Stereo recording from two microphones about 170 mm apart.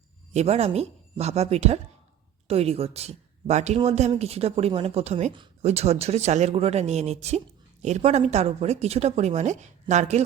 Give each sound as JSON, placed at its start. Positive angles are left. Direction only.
{"t": 0.3, "sound": "speech", "side_deg": -40}